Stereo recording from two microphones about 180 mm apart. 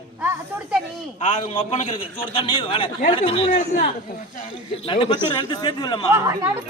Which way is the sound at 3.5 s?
45° left (ahead or behind).